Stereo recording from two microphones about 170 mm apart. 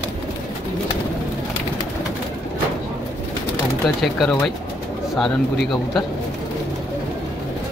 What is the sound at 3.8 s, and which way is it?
Speech, centre (ahead or behind).